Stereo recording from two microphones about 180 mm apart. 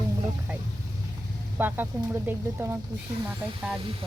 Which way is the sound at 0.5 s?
10° right (ahead or behind).